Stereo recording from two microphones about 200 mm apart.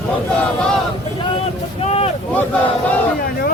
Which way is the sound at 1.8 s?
30° left (ahead or behind).